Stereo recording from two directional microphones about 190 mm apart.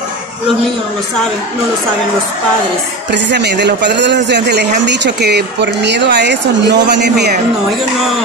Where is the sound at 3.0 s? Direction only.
65° right (ahead or behind).